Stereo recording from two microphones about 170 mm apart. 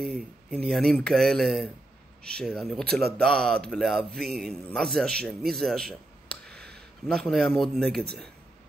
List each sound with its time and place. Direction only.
0.0 s speech: 5° left (ahead or behind)
6.5 s a sound: 70° right (ahead or behind)
7.1 s speech: 5° left (ahead or behind)